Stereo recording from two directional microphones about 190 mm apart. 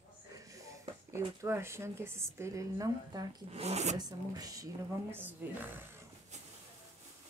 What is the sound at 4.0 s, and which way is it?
A woman's voice, 20° right (ahead or behind).